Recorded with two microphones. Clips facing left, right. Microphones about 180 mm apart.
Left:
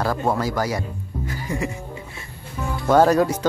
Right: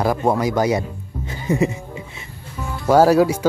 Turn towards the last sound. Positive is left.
turn(degrees=-10)  # may be behind; listen again after turning